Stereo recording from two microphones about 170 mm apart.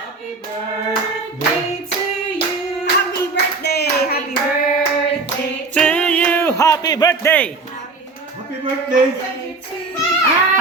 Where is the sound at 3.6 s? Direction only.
70° left (ahead or behind).